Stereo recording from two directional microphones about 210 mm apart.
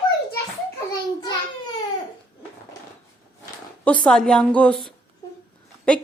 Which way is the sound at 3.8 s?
5° left (ahead or behind).